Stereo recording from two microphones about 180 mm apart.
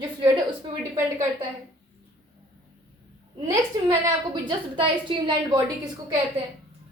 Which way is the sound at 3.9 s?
25° right (ahead or behind).